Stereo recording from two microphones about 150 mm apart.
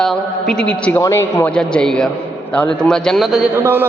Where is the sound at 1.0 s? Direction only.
20° left (ahead or behind).